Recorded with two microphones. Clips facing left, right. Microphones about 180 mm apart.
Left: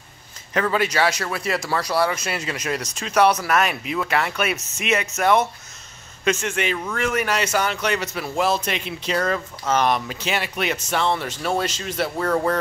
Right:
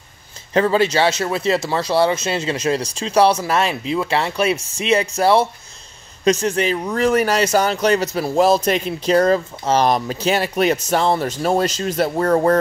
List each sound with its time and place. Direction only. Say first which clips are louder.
0.5 s speech: right 6 dB; 30° right (ahead or behind)